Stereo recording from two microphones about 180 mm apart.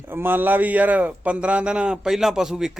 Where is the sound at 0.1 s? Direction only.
10° right (ahead or behind).